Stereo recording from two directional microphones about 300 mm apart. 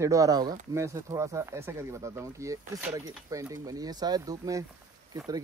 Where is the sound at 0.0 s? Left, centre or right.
Centre.